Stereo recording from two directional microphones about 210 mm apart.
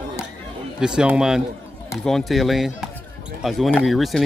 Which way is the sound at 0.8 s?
5° right (ahead or behind).